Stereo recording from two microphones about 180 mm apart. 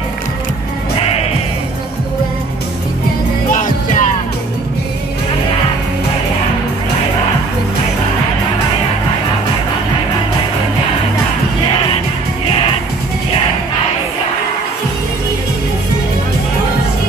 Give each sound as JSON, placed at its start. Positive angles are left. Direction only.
{"t": 0.9, "sound": "music", "side_deg": 35}
{"t": 3.5, "sound": "music", "side_deg": 45}